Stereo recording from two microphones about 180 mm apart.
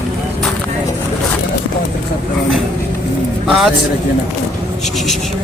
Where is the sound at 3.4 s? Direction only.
Centre (ahead or behind).